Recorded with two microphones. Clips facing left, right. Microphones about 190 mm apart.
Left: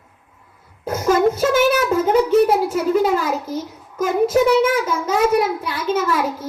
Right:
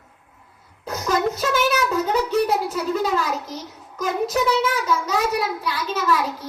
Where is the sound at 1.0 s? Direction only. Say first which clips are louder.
Left 6 dB; 50° left (ahead or behind).